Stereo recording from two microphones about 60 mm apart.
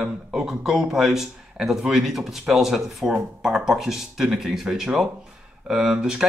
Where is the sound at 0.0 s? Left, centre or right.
Centre.